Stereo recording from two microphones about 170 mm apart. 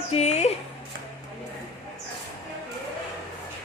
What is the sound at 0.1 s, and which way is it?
Speech, 40° left (ahead or behind).